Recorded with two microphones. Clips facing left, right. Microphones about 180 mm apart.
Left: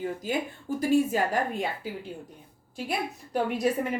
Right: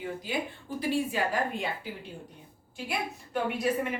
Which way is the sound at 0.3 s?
45° left (ahead or behind).